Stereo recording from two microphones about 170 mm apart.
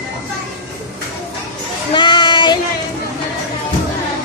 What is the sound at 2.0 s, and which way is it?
Child singing, 25° left (ahead or behind).